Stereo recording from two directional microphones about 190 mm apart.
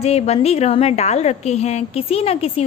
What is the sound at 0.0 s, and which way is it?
A woman's voice, 35° left (ahead or behind).